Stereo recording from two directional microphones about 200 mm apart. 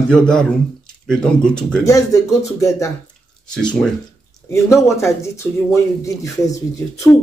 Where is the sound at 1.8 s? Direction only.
15° left (ahead or behind).